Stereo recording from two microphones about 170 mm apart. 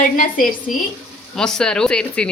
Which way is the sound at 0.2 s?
55° left (ahead or behind).